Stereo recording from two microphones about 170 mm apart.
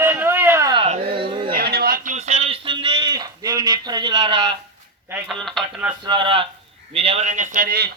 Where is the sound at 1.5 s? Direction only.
65° right (ahead or behind); by 3.1 s 35° right (ahead or behind).